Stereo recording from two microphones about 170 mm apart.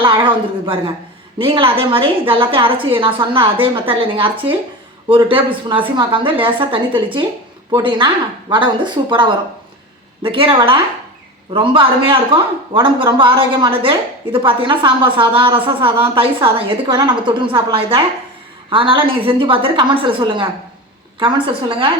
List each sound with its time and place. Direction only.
0.0 s a woman's voice: 30° right (ahead or behind)